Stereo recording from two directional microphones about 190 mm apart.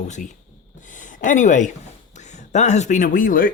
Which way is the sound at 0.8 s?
40° left (ahead or behind).